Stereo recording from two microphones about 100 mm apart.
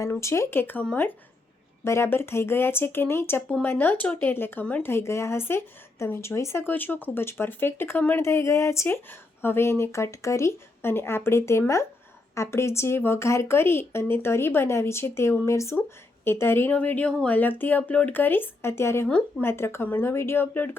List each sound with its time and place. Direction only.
0.0 s speech: 30° left (ahead or behind)
8.2 s a woman's voice: 30° left (ahead or behind)